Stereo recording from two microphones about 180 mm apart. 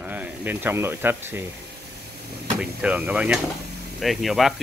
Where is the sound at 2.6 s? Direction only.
5° right (ahead or behind).